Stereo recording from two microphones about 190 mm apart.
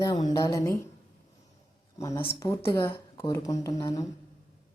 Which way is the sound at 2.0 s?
15° left (ahead or behind).